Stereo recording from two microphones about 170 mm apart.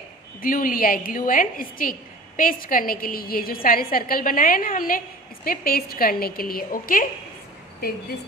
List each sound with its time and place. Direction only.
0.4 s a woman's voice: 55° left (ahead or behind)